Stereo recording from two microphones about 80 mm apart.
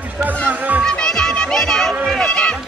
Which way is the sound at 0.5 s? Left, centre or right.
Right.